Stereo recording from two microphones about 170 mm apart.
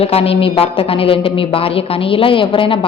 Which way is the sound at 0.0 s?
35° left (ahead or behind).